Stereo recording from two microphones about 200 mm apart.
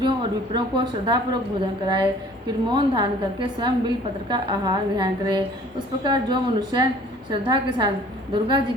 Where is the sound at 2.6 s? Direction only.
20° right (ahead or behind).